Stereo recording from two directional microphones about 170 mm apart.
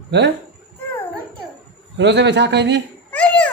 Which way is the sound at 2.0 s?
90° right.